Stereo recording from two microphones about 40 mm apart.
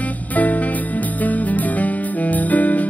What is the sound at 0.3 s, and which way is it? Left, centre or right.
Music, left.